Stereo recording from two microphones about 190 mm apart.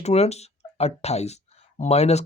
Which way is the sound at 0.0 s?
35° left (ahead or behind).